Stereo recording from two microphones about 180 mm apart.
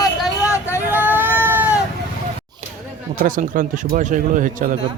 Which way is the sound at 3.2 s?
50° right (ahead or behind).